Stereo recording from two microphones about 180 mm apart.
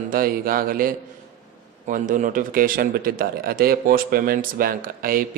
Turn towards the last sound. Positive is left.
turn(degrees=-55)  # may be behind; listen again after turning